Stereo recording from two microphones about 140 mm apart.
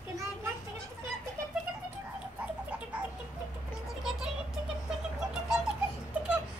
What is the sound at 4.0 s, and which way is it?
Music, 5° right (ahead or behind).